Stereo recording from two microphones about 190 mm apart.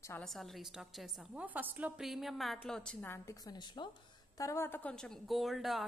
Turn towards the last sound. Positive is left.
turn(degrees=0)  # may be behind; listen again after turning